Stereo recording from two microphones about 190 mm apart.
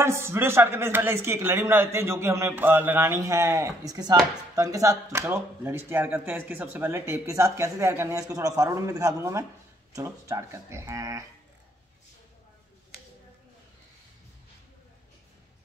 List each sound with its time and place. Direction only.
0.0 s speech: 15° right (ahead or behind)